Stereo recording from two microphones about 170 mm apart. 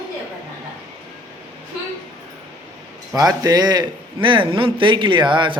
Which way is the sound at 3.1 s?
20° right (ahead or behind).